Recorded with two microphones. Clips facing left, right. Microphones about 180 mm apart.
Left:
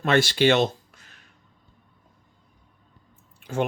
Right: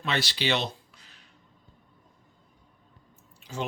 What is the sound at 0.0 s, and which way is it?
Speech, 50° left (ahead or behind).